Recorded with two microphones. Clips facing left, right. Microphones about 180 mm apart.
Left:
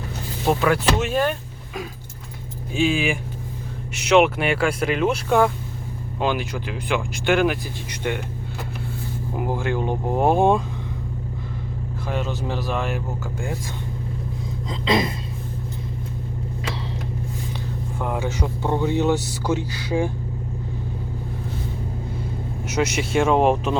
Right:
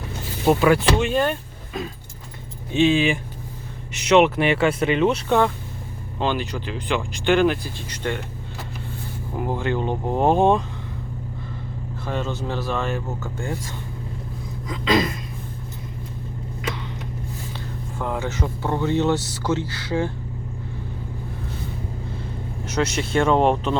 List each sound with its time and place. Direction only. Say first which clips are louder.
0.4 s speech: right 3 dB; centre (ahead or behind)
9.3 s speech: right 1 dB; 10° left (ahead or behind)
12.0 s speech: even; 10° left (ahead or behind)
14.7 s a sound: right 1 dB; 25° left (ahead or behind)
18.0 s speech: even; 15° left (ahead or behind)
22.6 s speech: even; 10° left (ahead or behind)